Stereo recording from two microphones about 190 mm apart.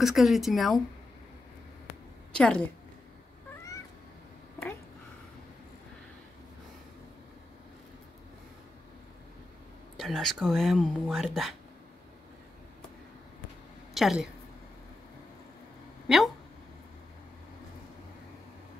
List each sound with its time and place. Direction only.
0.0 s speech: centre (ahead or behind)
2.3 s speech: 5° left (ahead or behind)
9.9 s speech: centre (ahead or behind)
13.9 s speech: 5° right (ahead or behind)
16.1 s speech: centre (ahead or behind)